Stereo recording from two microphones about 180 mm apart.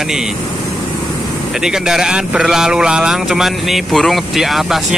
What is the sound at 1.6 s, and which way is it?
Speech, 5° right (ahead or behind).